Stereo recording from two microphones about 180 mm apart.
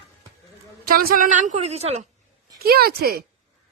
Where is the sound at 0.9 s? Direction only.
55° right (ahead or behind); by 2.1 s 35° right (ahead or behind).